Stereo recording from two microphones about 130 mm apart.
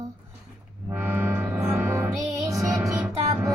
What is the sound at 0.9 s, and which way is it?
Music, 15° right (ahead or behind).